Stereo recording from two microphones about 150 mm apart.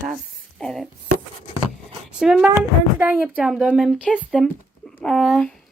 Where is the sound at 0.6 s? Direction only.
Centre (ahead or behind).